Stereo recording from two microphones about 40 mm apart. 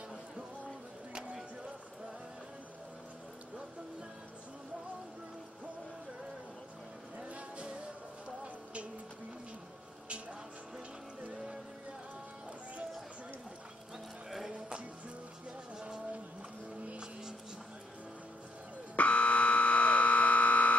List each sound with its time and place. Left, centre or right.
7.2 s music: right
11.3 s music: centre
15.8 s vehicle: right
18.9 s buzzer: left